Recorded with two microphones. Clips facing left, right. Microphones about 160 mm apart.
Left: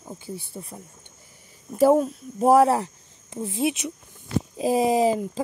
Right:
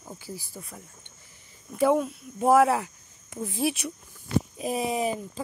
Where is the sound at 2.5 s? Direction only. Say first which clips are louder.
Left 2 dB; 30° left (ahead or behind).